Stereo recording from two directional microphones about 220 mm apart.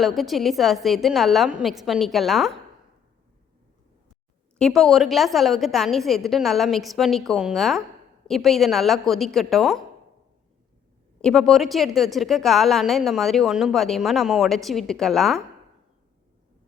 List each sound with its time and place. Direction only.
0.0 s a woman's voice: centre (ahead or behind)
4.5 s a woman's voice: centre (ahead or behind)
11.2 s a woman's voice: centre (ahead or behind)